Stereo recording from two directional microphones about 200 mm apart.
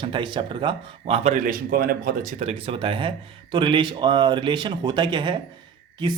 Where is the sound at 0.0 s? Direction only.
25° right (ahead or behind); by 2.3 s 45° right (ahead or behind).